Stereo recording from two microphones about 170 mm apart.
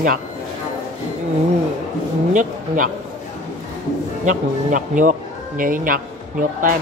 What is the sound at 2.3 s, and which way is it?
Speech, 50° right (ahead or behind).